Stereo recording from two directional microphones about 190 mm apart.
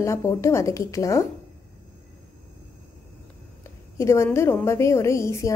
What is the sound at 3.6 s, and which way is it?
A woman's voice, 15° left (ahead or behind).